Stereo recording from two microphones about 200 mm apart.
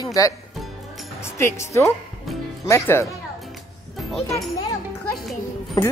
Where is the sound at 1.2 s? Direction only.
15° left (ahead or behind).